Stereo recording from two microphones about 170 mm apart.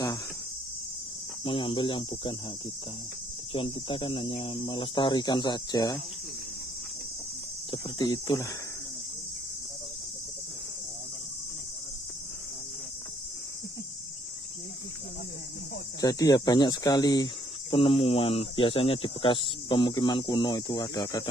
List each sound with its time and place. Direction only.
1.4 s speech: 30° left (ahead or behind)
3.5 s speech: 30° left (ahead or behind)
7.7 s speech: 25° left (ahead or behind)
16.0 s speech: 20° left (ahead or behind)